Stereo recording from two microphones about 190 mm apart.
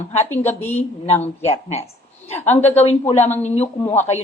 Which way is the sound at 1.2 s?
35° left (ahead or behind).